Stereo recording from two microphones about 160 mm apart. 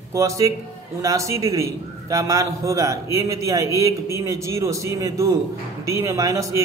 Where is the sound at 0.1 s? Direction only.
20° right (ahead or behind).